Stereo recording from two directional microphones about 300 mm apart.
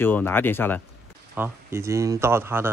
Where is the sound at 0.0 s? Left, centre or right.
Centre.